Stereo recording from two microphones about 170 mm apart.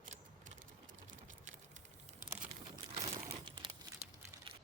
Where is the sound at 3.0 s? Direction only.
30° right (ahead or behind).